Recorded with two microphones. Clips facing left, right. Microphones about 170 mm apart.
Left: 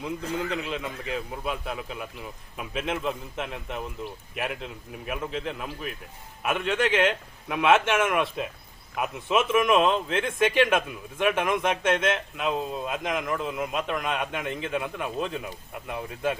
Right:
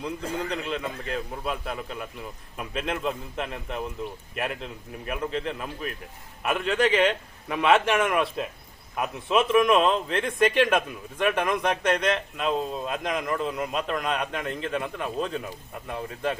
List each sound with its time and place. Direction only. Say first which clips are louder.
0.3 s a man's voice: even; centre (ahead or behind)